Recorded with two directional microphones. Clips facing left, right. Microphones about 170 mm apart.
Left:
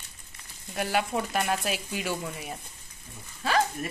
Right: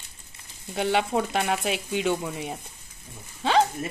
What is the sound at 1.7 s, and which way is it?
A woman's voice, 20° right (ahead or behind).